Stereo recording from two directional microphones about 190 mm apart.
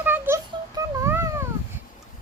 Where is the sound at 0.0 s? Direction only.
10° right (ahead or behind).